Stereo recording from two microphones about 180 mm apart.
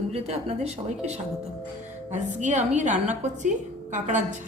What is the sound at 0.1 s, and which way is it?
A woman's voice, 35° right (ahead or behind).